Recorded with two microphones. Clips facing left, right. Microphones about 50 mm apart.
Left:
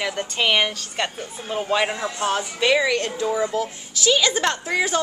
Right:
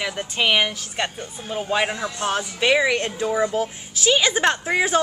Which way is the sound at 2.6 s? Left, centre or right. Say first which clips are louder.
Right 1 dB; centre.